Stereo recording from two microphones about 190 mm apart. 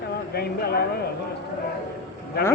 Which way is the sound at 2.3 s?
55° left (ahead or behind).